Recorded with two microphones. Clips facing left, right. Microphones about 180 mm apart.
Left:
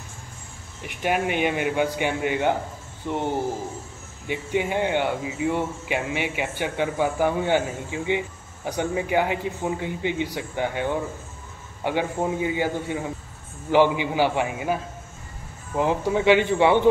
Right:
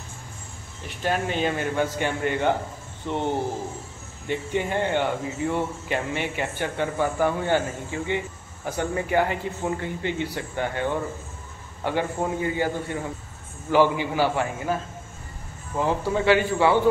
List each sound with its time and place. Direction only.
0.8 s speech: 15° left (ahead or behind)
4.3 s speech: 10° left (ahead or behind)